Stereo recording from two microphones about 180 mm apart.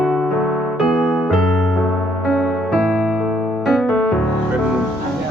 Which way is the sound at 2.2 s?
Centre (ahead or behind).